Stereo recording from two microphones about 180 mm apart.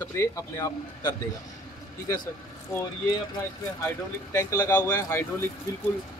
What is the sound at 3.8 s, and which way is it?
Speech, 15° left (ahead or behind).